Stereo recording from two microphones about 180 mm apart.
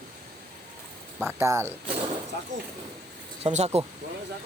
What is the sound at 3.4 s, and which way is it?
Speech, 40° right (ahead or behind).